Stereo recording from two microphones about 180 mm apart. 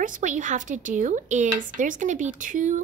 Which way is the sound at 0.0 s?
45° right (ahead or behind).